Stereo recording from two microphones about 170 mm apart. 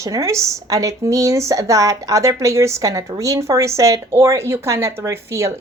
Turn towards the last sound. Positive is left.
turn(degrees=-15)  # may be behind; listen again after turning